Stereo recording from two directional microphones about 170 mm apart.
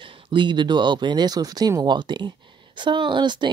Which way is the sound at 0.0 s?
30° right (ahead or behind).